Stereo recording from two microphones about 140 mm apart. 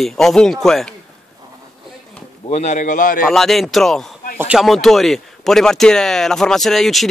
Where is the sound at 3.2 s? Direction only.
Centre (ahead or behind).